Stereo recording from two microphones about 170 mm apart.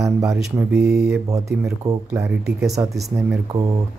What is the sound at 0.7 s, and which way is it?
Mantra, 75° right (ahead or behind).